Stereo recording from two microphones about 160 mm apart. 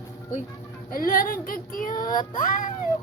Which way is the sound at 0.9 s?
60° left (ahead or behind).